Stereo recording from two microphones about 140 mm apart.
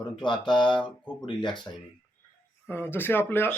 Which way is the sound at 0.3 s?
35° left (ahead or behind).